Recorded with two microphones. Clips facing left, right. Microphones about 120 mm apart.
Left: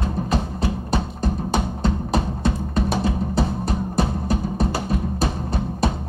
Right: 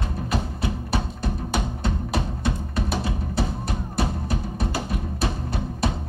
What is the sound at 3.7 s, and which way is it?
Music, 30° left (ahead or behind).